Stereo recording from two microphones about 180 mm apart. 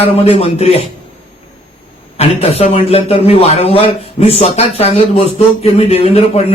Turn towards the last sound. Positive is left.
turn(degrees=35)  # may be behind; listen again after turning